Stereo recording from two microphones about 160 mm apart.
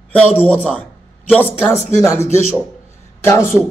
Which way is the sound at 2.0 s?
20° left (ahead or behind).